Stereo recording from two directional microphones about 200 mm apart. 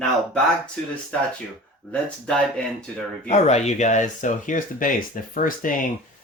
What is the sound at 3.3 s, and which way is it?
Speech, 35° left (ahead or behind).